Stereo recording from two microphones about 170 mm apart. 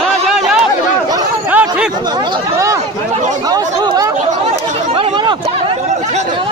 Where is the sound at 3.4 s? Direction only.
25° right (ahead or behind).